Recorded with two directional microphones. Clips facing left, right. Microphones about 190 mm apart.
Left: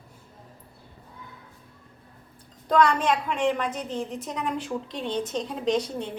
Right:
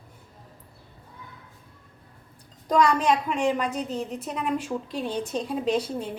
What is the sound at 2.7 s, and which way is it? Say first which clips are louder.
A woman's voice: even; 10° right (ahead or behind).